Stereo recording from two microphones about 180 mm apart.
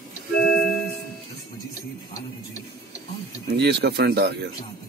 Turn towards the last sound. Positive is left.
turn(degrees=-65)  # may be behind; listen again after turning